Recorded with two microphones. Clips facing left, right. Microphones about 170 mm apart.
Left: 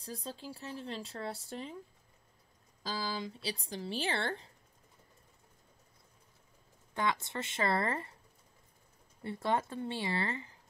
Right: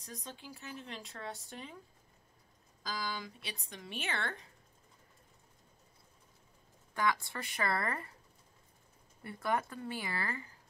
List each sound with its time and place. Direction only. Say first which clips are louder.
0.0 s speech: left 5 dB; 30° left (ahead or behind)
2.8 s speech: left 3 dB; 30° left (ahead or behind)
6.9 s speech: even; 25° left (ahead or behind)
9.2 s speech: left 2 dB; 25° left (ahead or behind)